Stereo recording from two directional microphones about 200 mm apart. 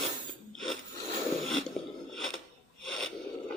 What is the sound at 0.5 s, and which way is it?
Ratchet, centre (ahead or behind).